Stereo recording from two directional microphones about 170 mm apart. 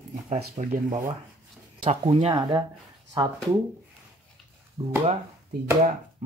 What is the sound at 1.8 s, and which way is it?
Speech, 30° right (ahead or behind).